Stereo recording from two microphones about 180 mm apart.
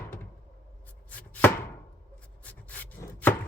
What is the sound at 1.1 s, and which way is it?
Chopping, 5° left (ahead or behind).